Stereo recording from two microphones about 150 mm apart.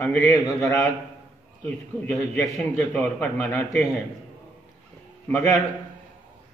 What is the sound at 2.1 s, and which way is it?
Speech, 10° left (ahead or behind).